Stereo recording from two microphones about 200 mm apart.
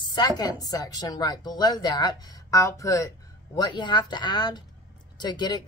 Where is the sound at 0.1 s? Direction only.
20° left (ahead or behind).